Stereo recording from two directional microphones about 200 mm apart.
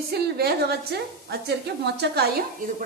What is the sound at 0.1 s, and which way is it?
A woman's voice, 50° right (ahead or behind).